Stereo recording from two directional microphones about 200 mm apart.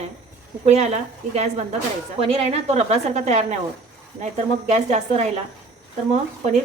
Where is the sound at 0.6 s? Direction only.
35° right (ahead or behind).